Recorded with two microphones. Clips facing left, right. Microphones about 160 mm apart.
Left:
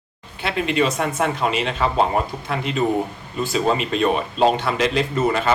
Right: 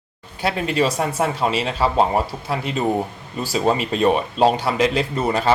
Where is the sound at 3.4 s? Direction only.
35° right (ahead or behind).